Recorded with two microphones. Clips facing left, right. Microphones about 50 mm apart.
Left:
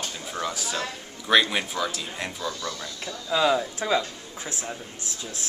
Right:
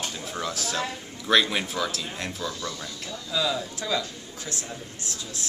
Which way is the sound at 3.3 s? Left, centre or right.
Left.